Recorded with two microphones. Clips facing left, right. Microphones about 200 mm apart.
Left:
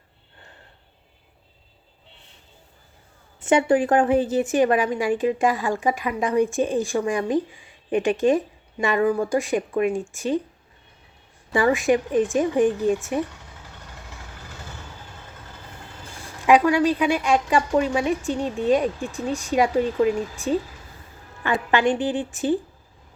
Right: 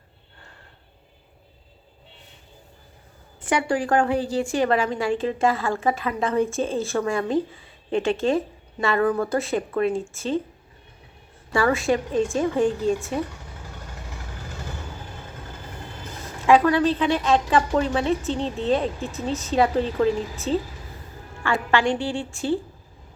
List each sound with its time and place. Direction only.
3.4 s a woman's voice: 25° left (ahead or behind)
11.5 s a woman's voice: 15° left (ahead or behind)
16.5 s a woman's voice: 15° left (ahead or behind)